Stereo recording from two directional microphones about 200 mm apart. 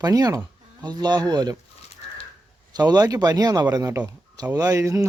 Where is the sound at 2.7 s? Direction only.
20° right (ahead or behind).